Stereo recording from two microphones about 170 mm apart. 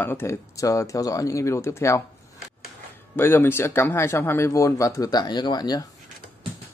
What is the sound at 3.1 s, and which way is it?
Speech, 15° left (ahead or behind).